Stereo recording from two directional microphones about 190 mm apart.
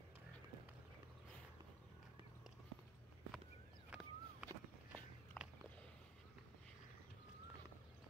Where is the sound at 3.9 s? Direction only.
5° right (ahead or behind).